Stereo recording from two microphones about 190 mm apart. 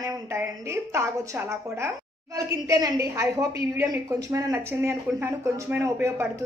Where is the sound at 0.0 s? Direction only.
15° right (ahead or behind).